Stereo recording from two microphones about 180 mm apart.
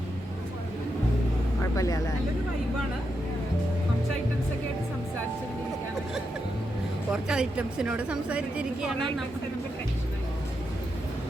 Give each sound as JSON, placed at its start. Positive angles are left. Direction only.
{"t": 1.7, "sound": "speech", "side_deg": 20}
{"t": 7.1, "sound": "speech", "side_deg": -5}